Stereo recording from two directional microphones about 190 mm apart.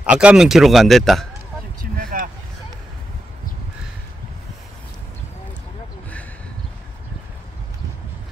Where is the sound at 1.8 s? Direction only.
45° right (ahead or behind).